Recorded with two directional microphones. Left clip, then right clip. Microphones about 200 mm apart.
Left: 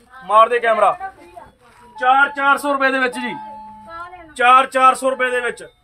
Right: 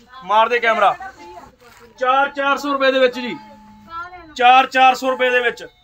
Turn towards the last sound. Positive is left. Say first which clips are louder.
# right 3 dB
turn(degrees=35)  # may be behind; listen again after turning